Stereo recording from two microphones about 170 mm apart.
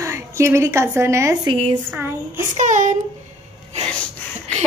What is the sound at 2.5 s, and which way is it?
Speech, 45° right (ahead or behind).